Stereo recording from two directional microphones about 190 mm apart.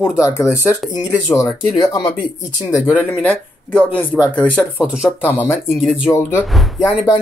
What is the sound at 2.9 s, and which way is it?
Speech, 10° left (ahead or behind).